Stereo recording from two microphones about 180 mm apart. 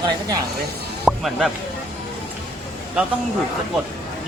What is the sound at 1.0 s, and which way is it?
Music, centre (ahead or behind).